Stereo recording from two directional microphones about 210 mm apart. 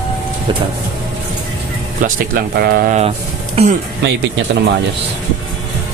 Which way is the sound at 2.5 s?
45° right (ahead or behind).